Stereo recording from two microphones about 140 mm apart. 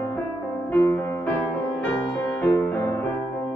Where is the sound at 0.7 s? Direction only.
15° left (ahead or behind).